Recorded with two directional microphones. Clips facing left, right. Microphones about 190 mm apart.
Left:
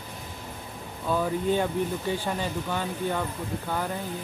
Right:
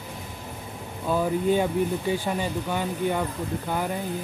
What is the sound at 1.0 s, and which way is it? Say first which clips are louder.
Speech: right 3 dB; 10° right (ahead or behind).